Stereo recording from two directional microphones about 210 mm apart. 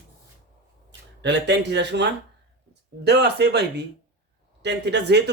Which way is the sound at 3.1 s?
50° right (ahead or behind).